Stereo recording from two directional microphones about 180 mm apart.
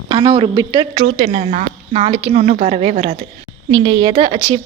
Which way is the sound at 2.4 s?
45° right (ahead or behind).